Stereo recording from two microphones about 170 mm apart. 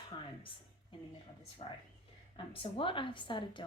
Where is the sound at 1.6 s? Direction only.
35° left (ahead or behind).